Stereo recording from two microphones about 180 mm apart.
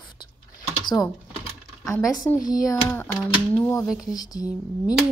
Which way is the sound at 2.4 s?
20° left (ahead or behind).